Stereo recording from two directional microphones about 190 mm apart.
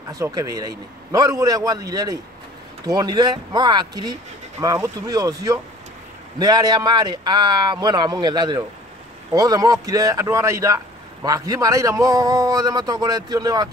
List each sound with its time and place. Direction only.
0.1 s a man's voice: 20° right (ahead or behind)